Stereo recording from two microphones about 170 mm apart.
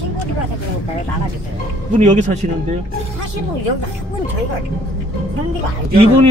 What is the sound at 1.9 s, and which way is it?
Speech, 45° right (ahead or behind).